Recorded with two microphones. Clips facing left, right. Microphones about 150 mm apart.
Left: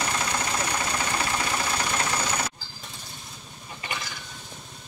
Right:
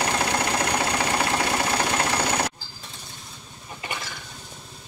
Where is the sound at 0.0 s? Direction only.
70° right (ahead or behind).